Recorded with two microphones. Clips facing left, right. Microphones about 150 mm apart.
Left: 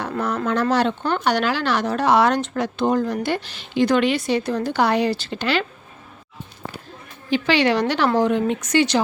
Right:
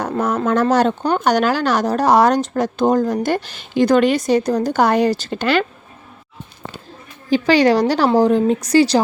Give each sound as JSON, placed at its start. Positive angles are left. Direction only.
{"t": 0.4, "sound": "speech", "side_deg": -45}
{"t": 7.3, "sound": "a woman's voice", "side_deg": -40}